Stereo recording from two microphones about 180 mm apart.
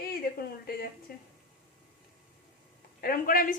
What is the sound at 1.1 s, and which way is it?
Speech, 55° left (ahead or behind).